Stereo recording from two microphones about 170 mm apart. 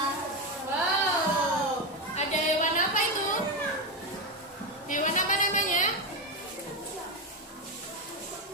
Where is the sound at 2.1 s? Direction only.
45° left (ahead or behind).